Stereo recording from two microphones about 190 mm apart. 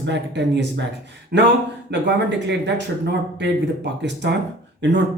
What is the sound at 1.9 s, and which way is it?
Speech, 70° right (ahead or behind).